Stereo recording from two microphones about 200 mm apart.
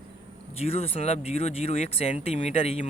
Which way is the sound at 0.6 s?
30° left (ahead or behind).